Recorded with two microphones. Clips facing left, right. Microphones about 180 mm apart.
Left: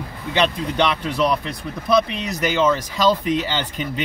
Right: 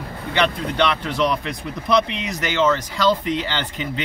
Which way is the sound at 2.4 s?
10° left (ahead or behind).